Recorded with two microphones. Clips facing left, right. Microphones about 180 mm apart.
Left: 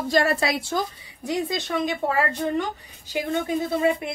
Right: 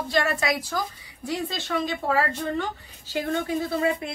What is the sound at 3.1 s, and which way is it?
Speech, 20° left (ahead or behind).